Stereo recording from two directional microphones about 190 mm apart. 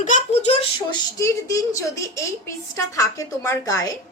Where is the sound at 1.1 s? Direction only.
15° left (ahead or behind).